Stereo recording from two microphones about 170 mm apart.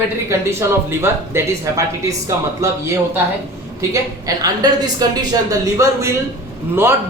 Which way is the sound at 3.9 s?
20° right (ahead or behind).